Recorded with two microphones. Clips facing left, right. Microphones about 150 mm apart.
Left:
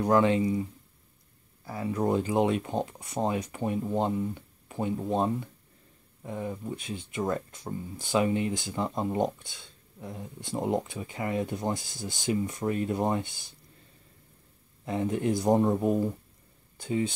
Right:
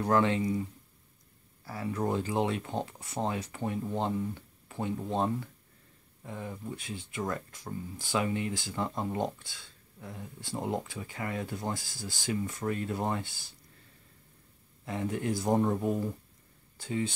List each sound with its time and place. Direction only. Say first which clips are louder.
0.0 s speech: left 4 dB; 15° left (ahead or behind)
1.7 s speech: left 4 dB; 20° left (ahead or behind)
14.9 s speech: left 4 dB; 20° left (ahead or behind)